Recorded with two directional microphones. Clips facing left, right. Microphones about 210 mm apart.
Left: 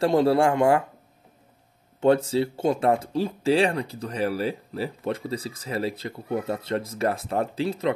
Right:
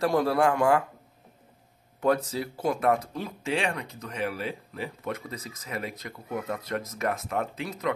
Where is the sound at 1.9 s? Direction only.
25° left (ahead or behind).